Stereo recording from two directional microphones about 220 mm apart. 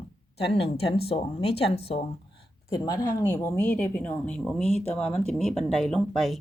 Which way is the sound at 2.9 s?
15° left (ahead or behind).